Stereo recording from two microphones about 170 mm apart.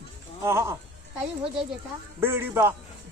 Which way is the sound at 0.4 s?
15° right (ahead or behind).